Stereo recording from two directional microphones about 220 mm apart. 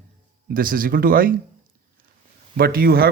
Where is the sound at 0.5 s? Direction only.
40° right (ahead or behind).